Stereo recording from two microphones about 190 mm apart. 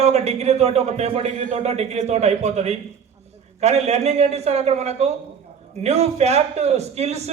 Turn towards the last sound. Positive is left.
turn(degrees=-35)  # may be behind; listen again after turning